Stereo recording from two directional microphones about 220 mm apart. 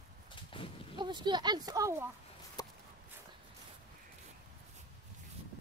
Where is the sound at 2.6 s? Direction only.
15° left (ahead or behind).